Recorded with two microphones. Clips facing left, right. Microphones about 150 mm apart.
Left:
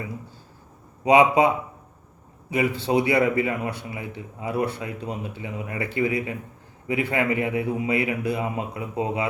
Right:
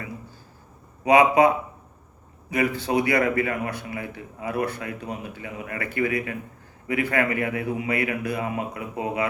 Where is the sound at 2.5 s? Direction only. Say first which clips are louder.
Left 1 dB; 25° left (ahead or behind).